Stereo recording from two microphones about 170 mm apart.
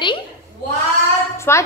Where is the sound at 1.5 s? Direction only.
15° left (ahead or behind).